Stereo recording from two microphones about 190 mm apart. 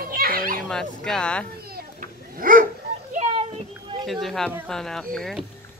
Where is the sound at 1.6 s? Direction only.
55° right (ahead or behind).